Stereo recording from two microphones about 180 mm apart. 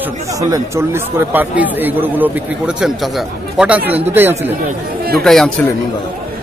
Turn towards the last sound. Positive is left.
turn(degrees=0)  # may be behind; listen again after turning